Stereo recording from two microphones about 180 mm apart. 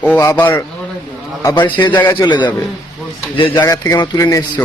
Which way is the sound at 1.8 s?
25° left (ahead or behind).